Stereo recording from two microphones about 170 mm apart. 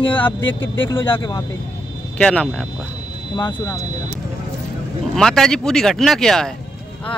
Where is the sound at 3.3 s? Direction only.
25° left (ahead or behind).